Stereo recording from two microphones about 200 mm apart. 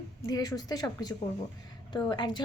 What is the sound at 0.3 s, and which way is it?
A woman's voice, 20° left (ahead or behind).